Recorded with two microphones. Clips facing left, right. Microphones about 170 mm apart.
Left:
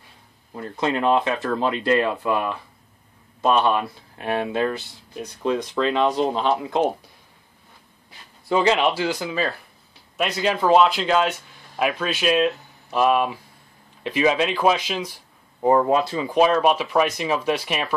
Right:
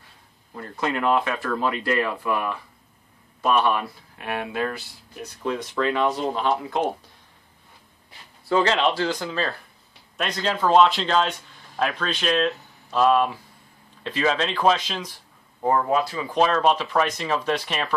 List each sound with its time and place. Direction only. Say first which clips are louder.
0.6 s speech: left 3 dB; 25° left (ahead or behind)
8.5 s speech: left 2 dB; 15° left (ahead or behind)
16.3 s speech: left 3 dB; 10° left (ahead or behind)